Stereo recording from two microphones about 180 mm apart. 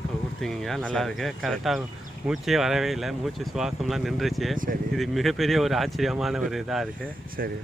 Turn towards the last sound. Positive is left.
turn(degrees=0)  # may be behind; listen again after turning